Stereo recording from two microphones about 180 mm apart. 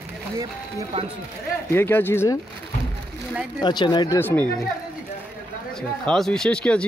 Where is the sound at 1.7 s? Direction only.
10° left (ahead or behind).